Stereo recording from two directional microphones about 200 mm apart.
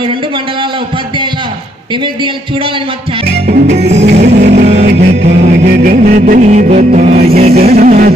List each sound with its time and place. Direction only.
3.6 s music: 35° right (ahead or behind)